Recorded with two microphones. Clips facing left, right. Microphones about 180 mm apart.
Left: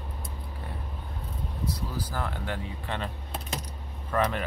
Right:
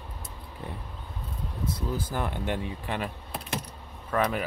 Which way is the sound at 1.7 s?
20° right (ahead or behind).